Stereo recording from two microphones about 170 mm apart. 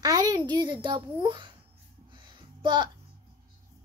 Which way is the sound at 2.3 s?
25° right (ahead or behind).